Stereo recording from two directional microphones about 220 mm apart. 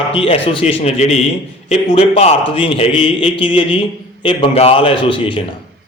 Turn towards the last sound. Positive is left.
turn(degrees=20)  # may be behind; listen again after turning